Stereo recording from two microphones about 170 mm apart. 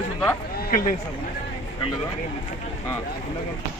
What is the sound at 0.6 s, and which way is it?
Vehicle, 55° left (ahead or behind).